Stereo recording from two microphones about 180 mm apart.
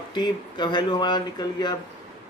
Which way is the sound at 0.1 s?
25° left (ahead or behind).